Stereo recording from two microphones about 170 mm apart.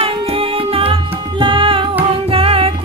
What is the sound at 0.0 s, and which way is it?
Music, 35° right (ahead or behind).